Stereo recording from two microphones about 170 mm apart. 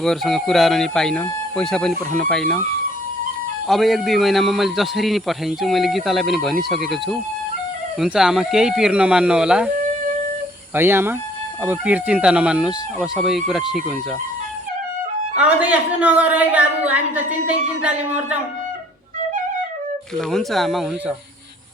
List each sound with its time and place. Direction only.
0.0 s a man's voice: centre (ahead or behind)
3.7 s a man's voice: centre (ahead or behind)
10.8 s a woman's voice: 15° right (ahead or behind)
15.4 s a woman's voice: 10° right (ahead or behind)
20.1 s a man's voice: centre (ahead or behind)